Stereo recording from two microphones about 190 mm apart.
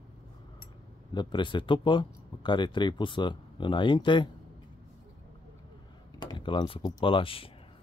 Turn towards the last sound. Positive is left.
turn(degrees=30)  # may be behind; listen again after turning